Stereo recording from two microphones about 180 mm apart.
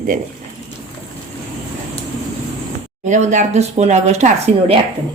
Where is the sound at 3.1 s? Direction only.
40° right (ahead or behind).